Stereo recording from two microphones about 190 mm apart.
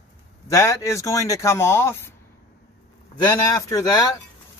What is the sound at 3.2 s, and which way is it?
Speech, 20° left (ahead or behind).